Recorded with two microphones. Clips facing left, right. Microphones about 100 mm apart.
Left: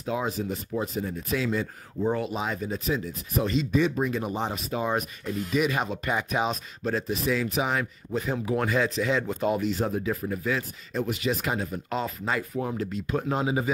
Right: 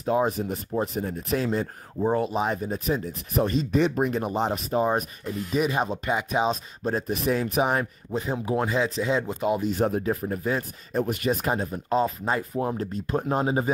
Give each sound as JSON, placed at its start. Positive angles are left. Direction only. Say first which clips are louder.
{"t": 0.0, "sound": "speech", "louder": "right 5 dB", "side_deg": -40}
{"t": 4.4, "sound": "speech", "louder": "right 5 dB", "side_deg": -40}
{"t": 9.3, "sound": "speech", "louder": "right 1 dB", "side_deg": -15}
{"t": 9.7, "sound": "speech", "louder": "right 3 dB", "side_deg": -50}
{"t": 10.9, "sound": "speech", "louder": "right 3 dB", "side_deg": -50}